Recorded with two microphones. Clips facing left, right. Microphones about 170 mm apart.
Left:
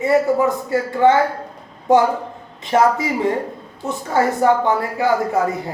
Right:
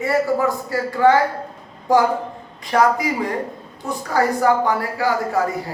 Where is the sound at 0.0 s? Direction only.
20° left (ahead or behind).